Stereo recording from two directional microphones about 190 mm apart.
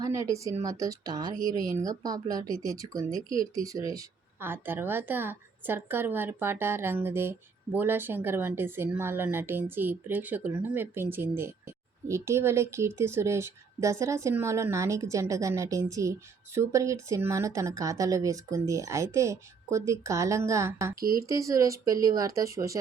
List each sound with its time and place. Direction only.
0.0 s speech: 15° right (ahead or behind)
20.9 s speech: 50° right (ahead or behind)
21.2 s speech: 15° right (ahead or behind)